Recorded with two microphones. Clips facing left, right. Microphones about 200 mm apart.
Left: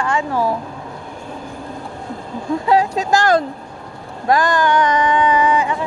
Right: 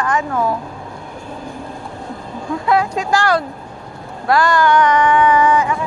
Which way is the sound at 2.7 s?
35° left (ahead or behind).